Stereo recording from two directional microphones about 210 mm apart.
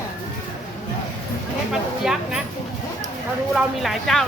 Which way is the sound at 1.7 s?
Centre (ahead or behind).